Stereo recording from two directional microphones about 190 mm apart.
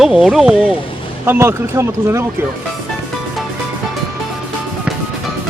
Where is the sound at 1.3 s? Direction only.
15° right (ahead or behind).